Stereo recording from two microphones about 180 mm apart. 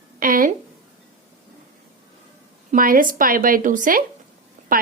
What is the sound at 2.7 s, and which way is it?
A woman's voice, 50° right (ahead or behind).